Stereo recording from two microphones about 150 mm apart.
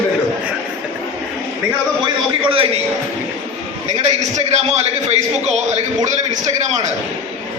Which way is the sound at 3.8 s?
50° right (ahead or behind).